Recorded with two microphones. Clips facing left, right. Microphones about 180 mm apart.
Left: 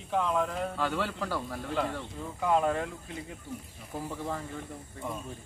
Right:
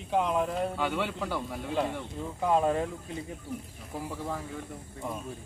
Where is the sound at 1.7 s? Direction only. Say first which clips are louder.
Right 2 dB; 20° right (ahead or behind).